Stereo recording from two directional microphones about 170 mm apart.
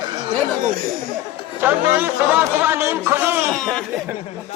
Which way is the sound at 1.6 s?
10° right (ahead or behind).